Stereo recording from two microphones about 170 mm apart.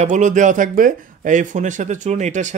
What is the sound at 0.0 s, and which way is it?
Speech, 45° right (ahead or behind).